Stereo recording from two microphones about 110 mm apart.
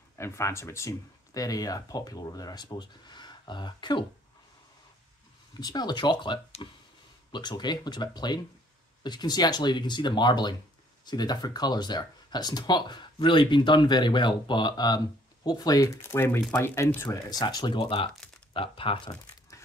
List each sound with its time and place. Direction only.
0.2 s speech: 25° left (ahead or behind); by 4.0 s 45° left (ahead or behind)
5.6 s speech: 40° left (ahead or behind)
17.3 s speech: 40° left (ahead or behind)